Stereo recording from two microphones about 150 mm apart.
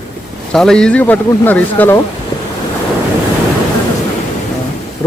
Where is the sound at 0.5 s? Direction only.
5° left (ahead or behind).